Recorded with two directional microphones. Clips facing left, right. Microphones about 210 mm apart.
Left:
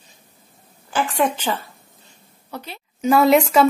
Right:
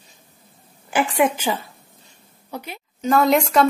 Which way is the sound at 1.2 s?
10° right (ahead or behind).